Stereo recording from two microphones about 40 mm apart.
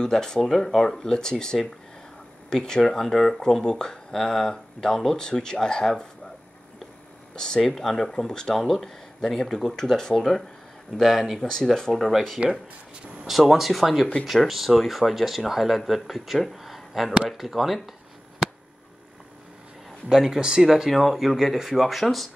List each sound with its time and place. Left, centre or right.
0.0 s speech: centre
7.3 s speech: centre
7.6 s speech: centre
13.5 s speech: centre
20.1 s speech: centre